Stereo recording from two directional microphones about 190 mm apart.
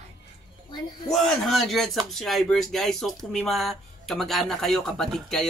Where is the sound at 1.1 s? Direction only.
Centre (ahead or behind).